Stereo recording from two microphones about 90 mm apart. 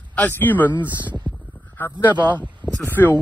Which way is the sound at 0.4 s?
20° left (ahead or behind).